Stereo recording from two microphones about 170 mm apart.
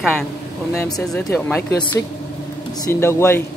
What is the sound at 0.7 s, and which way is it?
Speech, 20° left (ahead or behind).